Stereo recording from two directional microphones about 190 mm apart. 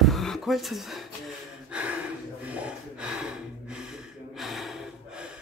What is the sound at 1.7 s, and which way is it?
Gasp, 5° right (ahead or behind).